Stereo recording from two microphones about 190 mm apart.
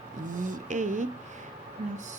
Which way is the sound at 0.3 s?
40° right (ahead or behind).